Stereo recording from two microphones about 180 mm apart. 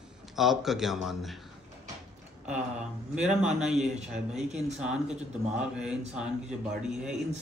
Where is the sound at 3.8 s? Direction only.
5° right (ahead or behind).